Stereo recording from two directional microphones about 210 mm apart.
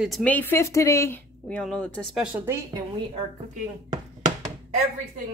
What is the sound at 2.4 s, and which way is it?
Speech, 15° right (ahead or behind).